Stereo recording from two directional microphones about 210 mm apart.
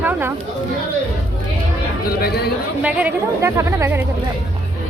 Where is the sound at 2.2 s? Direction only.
50° left (ahead or behind).